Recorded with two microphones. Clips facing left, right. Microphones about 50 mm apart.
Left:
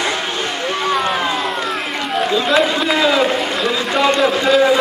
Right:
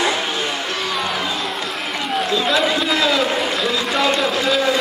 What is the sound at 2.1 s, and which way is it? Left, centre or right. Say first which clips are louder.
Run: left 4 dB; centre.